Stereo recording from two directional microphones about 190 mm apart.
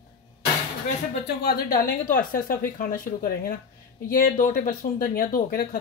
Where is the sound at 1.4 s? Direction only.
55° left (ahead or behind).